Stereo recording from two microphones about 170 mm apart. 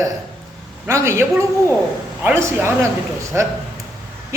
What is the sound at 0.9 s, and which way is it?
A man's voice, 15° right (ahead or behind).